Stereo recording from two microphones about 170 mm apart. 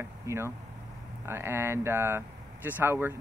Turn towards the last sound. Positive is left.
turn(degrees=-15)  # may be behind; listen again after turning